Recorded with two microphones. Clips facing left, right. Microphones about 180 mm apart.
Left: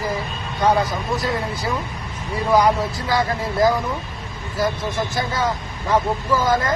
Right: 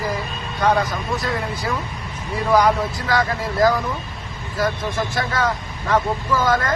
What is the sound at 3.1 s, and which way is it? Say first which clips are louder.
Speech: even; 25° left (ahead or behind).